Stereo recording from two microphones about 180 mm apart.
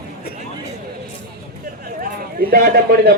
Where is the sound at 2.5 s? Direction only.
60° right (ahead or behind).